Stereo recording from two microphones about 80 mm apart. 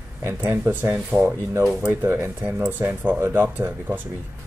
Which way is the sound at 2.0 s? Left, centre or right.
Right.